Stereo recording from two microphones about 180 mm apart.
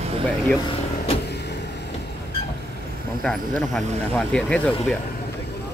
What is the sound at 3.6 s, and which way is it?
Speech, 5° left (ahead or behind).